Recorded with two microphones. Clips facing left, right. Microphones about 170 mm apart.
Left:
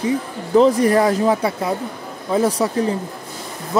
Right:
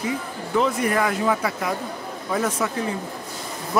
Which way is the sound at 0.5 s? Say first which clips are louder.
Left 8 dB; 35° left (ahead or behind).